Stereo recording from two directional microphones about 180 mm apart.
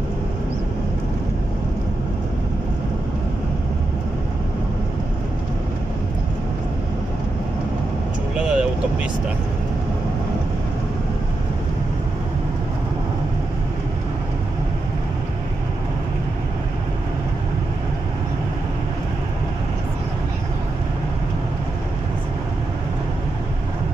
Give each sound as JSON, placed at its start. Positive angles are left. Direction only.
{"t": 8.4, "sound": "vehicle", "side_deg": -5}